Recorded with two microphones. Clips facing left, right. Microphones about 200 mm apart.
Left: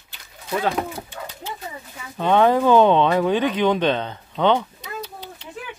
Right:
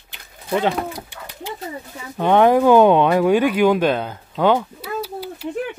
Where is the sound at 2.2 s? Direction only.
15° right (ahead or behind).